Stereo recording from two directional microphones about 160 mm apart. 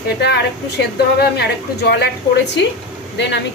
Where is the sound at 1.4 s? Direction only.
90° left.